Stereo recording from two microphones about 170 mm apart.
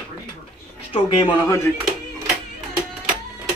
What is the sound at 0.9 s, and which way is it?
Speech, 30° left (ahead or behind).